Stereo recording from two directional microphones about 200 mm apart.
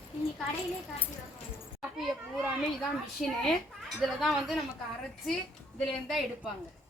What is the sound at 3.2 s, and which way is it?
Speech, centre (ahead or behind).